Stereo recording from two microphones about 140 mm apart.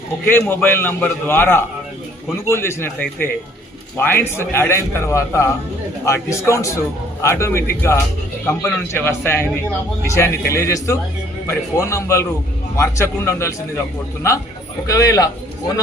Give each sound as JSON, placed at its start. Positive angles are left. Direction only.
{"t": 0.3, "sound": "a man's voice", "side_deg": 15}
{"t": 14.8, "sound": "a man's voice", "side_deg": 25}